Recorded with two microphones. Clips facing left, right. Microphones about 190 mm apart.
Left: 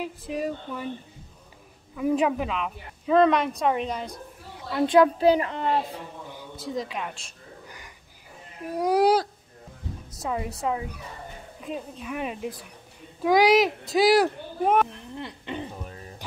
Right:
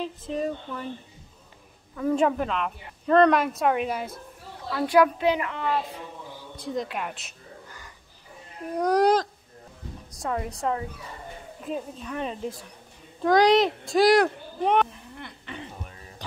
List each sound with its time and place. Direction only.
0.3 s a woman's voice: 5° left (ahead or behind)
2.0 s a woman's voice: 10° left (ahead or behind)
4.6 s a woman's voice: 25° left (ahead or behind)
6.5 s a woman's voice: centre (ahead or behind)
7.6 s a sound: 15° left (ahead or behind)
8.7 s a woman's voice: 5° left (ahead or behind)
15.1 s a sound: 25° left (ahead or behind)